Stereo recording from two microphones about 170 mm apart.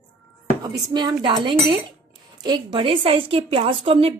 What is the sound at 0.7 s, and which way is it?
A woman's voice, 25° right (ahead or behind).